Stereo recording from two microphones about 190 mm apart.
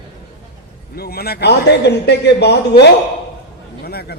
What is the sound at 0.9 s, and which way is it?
A man's voice, 55° left (ahead or behind).